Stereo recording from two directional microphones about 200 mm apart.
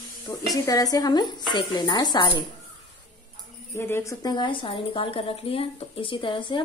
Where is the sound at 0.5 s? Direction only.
20° left (ahead or behind).